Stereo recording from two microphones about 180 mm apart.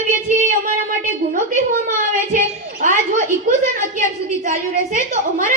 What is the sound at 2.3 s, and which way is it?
Speech, 50° right (ahead or behind).